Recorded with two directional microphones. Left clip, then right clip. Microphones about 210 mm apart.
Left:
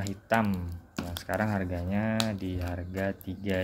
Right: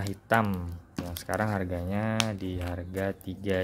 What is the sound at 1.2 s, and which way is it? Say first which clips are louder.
Speech: right 1 dB; 25° right (ahead or behind).